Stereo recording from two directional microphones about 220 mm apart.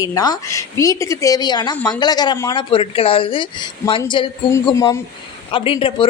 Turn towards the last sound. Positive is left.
turn(degrees=25)  # may be behind; listen again after turning